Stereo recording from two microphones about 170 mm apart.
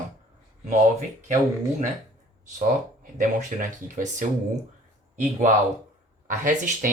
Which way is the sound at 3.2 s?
50° right (ahead or behind).